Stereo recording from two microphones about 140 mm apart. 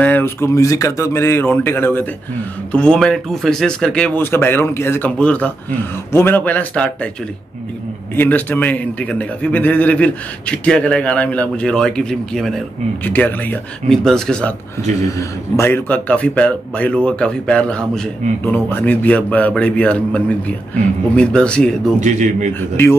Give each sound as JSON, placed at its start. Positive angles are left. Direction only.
{"t": 0.0, "sound": "a man's voice", "side_deg": 15}
{"t": 8.2, "sound": "a man's voice", "side_deg": 10}
{"t": 13.0, "sound": "a man's voice", "side_deg": 10}
{"t": 15.1, "sound": "a man's voice", "side_deg": 20}
{"t": 22.0, "sound": "a man's voice", "side_deg": -60}
{"t": 22.5, "sound": "a man's voice", "side_deg": 15}